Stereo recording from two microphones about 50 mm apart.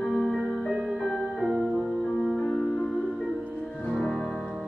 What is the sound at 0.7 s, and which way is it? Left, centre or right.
Music, centre.